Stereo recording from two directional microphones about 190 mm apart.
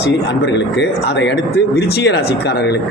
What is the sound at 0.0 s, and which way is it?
Speech, 65° left (ahead or behind).